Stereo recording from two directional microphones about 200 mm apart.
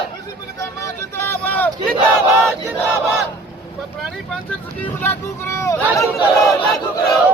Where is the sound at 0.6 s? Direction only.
15° left (ahead or behind).